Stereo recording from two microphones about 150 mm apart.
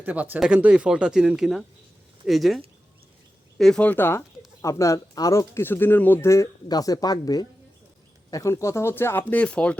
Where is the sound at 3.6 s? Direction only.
5° left (ahead or behind).